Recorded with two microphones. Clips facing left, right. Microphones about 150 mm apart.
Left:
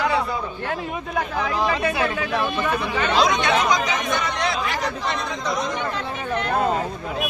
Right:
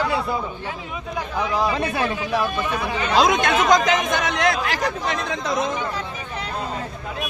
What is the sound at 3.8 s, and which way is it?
Speech, 90° right.